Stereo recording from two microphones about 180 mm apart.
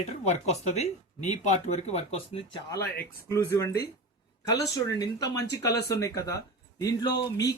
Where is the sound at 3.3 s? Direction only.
15° left (ahead or behind).